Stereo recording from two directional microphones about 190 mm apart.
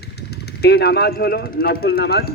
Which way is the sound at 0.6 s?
55° left (ahead or behind).